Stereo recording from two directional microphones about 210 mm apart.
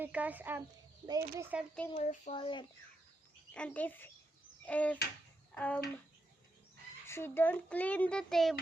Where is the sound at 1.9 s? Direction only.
30° left (ahead or behind).